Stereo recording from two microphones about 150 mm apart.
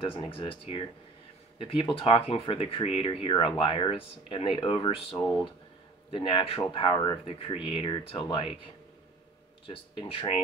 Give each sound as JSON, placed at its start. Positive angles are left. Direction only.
{"t": 0.0, "sound": "speech", "side_deg": 35}
{"t": 5.1, "sound": "speech", "side_deg": 5}
{"t": 6.1, "sound": "speech", "side_deg": 35}
{"t": 9.7, "sound": "speech", "side_deg": 35}